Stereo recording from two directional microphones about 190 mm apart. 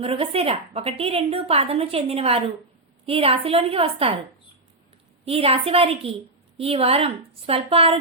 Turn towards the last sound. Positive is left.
turn(degrees=-30)  # may be behind; listen again after turning